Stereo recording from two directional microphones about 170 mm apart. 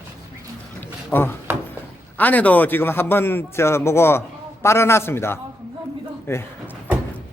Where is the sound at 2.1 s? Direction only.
10° left (ahead or behind).